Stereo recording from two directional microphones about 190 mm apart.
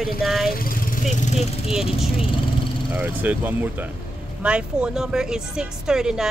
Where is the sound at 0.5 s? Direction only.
50° left (ahead or behind).